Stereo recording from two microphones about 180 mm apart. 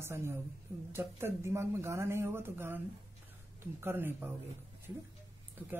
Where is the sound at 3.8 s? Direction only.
10° right (ahead or behind).